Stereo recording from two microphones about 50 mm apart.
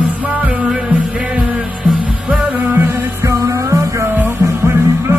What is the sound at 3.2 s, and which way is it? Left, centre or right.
Music, right.